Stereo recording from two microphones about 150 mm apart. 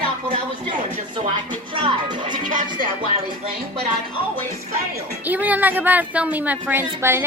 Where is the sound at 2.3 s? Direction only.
60° right (ahead or behind).